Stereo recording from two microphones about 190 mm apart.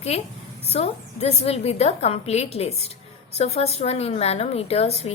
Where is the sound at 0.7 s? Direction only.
35° left (ahead or behind).